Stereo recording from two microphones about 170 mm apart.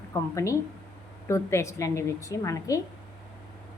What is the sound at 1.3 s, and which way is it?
A woman's voice, 15° left (ahead or behind).